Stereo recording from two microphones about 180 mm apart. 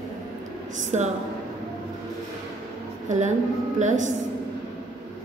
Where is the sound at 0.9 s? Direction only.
40° right (ahead or behind).